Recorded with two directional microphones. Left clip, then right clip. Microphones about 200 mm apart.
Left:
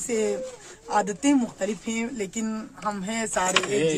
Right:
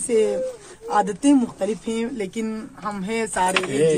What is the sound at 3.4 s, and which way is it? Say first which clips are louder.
Speech: right 2 dB; 40° left (ahead or behind).